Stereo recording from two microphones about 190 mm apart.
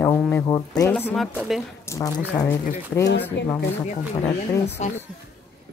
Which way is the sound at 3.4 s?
70° left (ahead or behind).